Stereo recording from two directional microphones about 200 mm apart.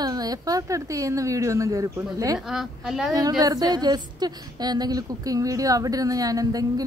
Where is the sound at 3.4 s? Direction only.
20° right (ahead or behind).